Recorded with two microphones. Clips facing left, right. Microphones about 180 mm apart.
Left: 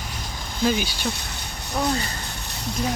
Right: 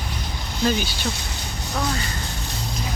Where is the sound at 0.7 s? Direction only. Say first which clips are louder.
Even; 10° left (ahead or behind).